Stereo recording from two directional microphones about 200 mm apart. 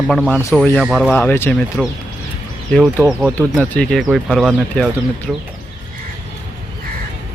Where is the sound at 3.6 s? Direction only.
5° left (ahead or behind).